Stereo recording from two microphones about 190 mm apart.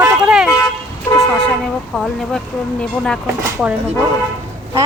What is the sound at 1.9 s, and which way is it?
Speech, centre (ahead or behind).